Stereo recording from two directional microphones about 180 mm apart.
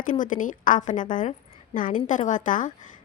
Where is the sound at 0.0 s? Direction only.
45° left (ahead or behind).